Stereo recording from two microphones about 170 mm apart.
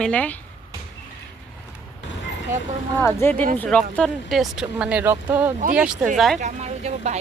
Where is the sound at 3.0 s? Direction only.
15° left (ahead or behind).